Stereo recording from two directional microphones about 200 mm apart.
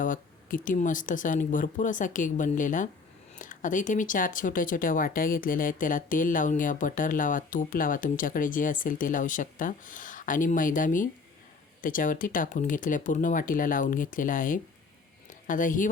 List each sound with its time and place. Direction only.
0.0 s speech: 40° left (ahead or behind)